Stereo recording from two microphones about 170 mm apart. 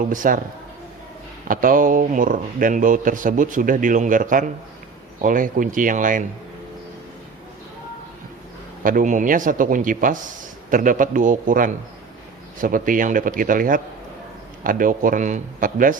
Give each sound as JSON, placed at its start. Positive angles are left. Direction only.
{"t": 0.1, "sound": "a man's voice", "side_deg": -50}
{"t": 1.5, "sound": "a man's voice", "side_deg": -55}
{"t": 8.8, "sound": "a man's voice", "side_deg": -55}